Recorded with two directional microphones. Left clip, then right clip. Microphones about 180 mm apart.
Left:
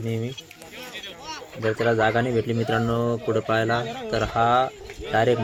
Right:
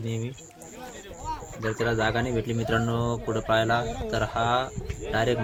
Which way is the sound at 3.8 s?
30° right (ahead or behind).